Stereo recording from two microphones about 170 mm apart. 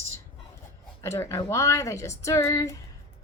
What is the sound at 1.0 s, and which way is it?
A woman's voice, 15° left (ahead or behind).